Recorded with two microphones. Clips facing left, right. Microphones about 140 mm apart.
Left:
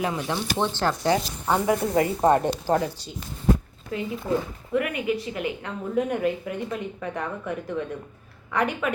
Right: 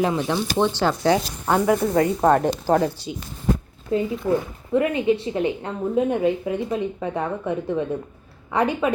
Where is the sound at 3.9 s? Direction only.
30° right (ahead or behind).